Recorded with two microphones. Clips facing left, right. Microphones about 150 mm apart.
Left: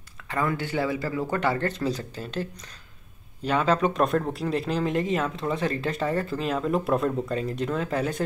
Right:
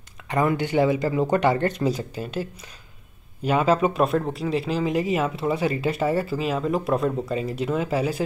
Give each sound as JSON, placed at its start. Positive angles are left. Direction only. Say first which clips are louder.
{"t": 0.3, "sound": "speech", "louder": "right 5 dB", "side_deg": -20}
{"t": 3.4, "sound": "speech", "louder": "right 3 dB", "side_deg": -10}